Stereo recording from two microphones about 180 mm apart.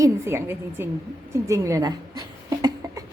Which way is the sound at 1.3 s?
15° right (ahead or behind).